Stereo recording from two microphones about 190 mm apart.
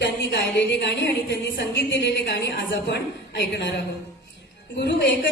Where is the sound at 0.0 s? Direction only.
65° left (ahead or behind).